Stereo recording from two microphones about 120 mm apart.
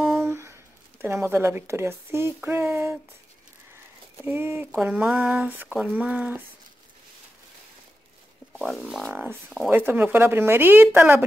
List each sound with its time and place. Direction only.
0.2 s a sound: 20° right (ahead or behind)
1.0 s speech: 20° right (ahead or behind)
4.2 s speech: 20° right (ahead or behind)
8.5 s speech: centre (ahead or behind)
9.1 s speech: 15° right (ahead or behind)